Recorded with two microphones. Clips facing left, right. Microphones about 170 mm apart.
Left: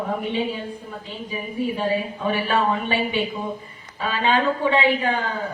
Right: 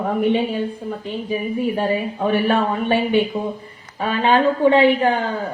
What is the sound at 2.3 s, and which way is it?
A woman's voice, 55° right (ahead or behind).